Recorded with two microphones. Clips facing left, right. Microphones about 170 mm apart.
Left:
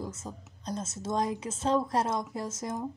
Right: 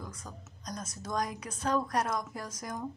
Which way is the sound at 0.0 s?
25° left (ahead or behind).